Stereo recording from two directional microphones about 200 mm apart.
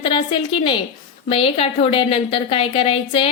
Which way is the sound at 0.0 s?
25° left (ahead or behind).